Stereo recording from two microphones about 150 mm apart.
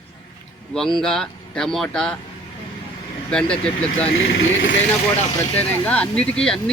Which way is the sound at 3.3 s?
5° left (ahead or behind).